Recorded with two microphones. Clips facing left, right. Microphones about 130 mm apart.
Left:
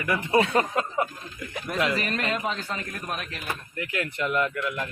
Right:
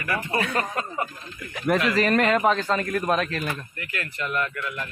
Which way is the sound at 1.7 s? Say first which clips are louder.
Right 5 dB; 70° right (ahead or behind).